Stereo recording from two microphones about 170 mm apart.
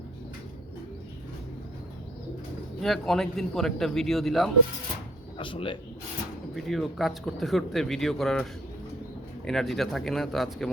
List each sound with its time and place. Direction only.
2.8 s speech: centre (ahead or behind)
5.4 s speech: 30° left (ahead or behind)
6.7 s speech: centre (ahead or behind)
9.5 s speech: centre (ahead or behind)